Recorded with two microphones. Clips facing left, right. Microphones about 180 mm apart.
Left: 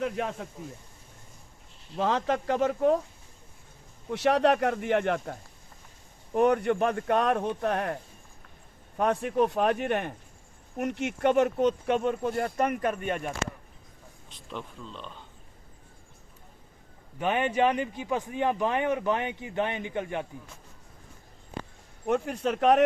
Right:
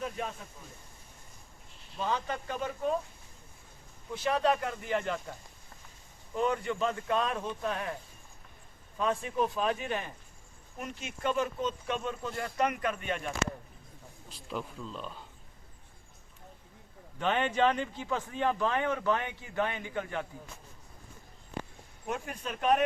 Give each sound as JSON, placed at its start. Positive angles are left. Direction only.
{"t": 0.0, "sound": "speech", "side_deg": 75}
{"t": 2.0, "sound": "speech", "side_deg": 90}
{"t": 4.1, "sound": "speech", "side_deg": 75}
{"t": 9.0, "sound": "speech", "side_deg": 65}
{"t": 14.3, "sound": "speech", "side_deg": -5}
{"t": 17.2, "sound": "a man's voice", "side_deg": 10}
{"t": 22.0, "sound": "speech", "side_deg": 65}